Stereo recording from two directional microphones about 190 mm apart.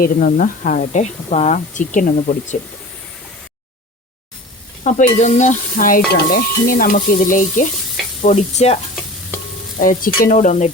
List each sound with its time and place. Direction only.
0.0 s speech: 45° left (ahead or behind)
4.8 s speech: 40° left (ahead or behind)
6.3 s stir: 50° left (ahead or behind)
8.2 s speech: 35° left (ahead or behind)
9.7 s stir: 45° left (ahead or behind)